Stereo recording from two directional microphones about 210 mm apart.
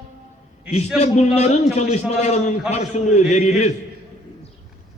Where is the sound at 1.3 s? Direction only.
30° left (ahead or behind).